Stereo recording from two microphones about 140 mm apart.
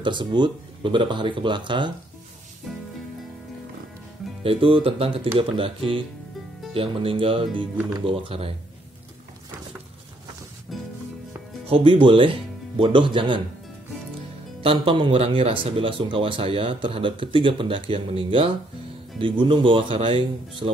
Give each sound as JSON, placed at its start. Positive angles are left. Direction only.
{"t": 0.0, "sound": "a man's voice", "side_deg": -35}
{"t": 4.4, "sound": "a man's voice", "side_deg": -40}
{"t": 10.7, "sound": "music", "side_deg": 0}
{"t": 11.6, "sound": "a man's voice", "side_deg": -40}
{"t": 14.6, "sound": "a man's voice", "side_deg": -40}